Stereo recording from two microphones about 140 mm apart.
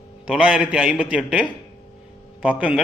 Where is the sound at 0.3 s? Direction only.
5° right (ahead or behind).